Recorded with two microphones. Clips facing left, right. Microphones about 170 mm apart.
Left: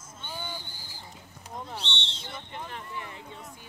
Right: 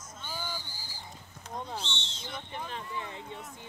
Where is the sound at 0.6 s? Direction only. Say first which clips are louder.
Even; 55° left (ahead or behind).